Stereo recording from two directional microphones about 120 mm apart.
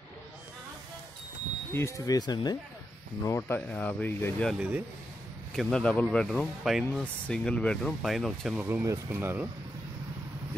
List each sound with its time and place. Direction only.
1.7 s speech: 20° left (ahead or behind)
3.3 s speech: 20° left (ahead or behind)
4.6 s speech: 10° right (ahead or behind)
5.5 s speech: 5° left (ahead or behind)
8.5 s speech: 10° right (ahead or behind)